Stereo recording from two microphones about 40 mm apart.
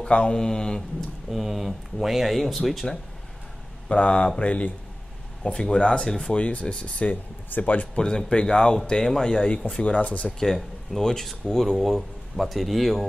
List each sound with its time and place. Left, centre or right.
0.0 s mantra: left
1.3 s speech: centre
3.9 s speech: left
6.3 s speech: left
7.1 s speech: left
7.9 s speech: left
9.8 s speech: left
10.4 s speech: centre